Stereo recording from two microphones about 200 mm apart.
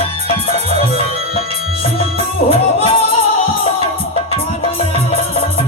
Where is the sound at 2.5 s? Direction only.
30° left (ahead or behind).